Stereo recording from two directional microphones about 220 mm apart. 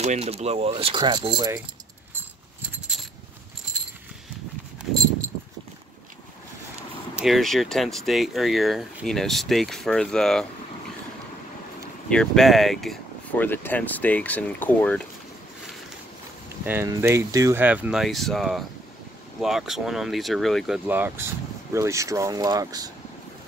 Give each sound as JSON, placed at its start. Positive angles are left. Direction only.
{"t": 0.0, "sound": "speech", "side_deg": -30}
{"t": 3.7, "sound": "a sound", "side_deg": -5}
{"t": 7.2, "sound": "speech", "side_deg": 0}
{"t": 12.1, "sound": "speech", "side_deg": 0}
{"t": 16.6, "sound": "speech", "side_deg": -10}